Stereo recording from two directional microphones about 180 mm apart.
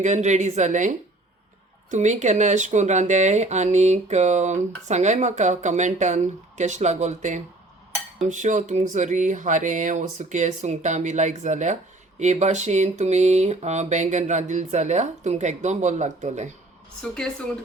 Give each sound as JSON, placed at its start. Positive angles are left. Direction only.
{"t": 0.0, "sound": "speech", "side_deg": -40}